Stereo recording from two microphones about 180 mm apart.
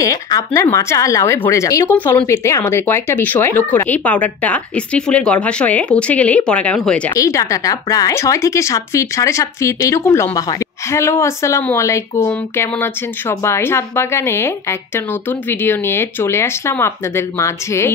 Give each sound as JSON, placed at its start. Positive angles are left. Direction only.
{"t": 0.0, "sound": "speech", "side_deg": 20}
{"t": 7.2, "sound": "speech", "side_deg": 15}